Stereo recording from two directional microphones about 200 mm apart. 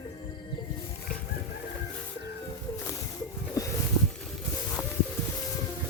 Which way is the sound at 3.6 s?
15° left (ahead or behind).